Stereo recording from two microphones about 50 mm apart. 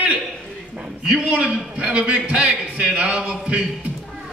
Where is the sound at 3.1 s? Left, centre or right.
Centre.